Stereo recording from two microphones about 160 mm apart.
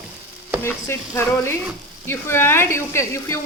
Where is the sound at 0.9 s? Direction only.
15° left (ahead or behind).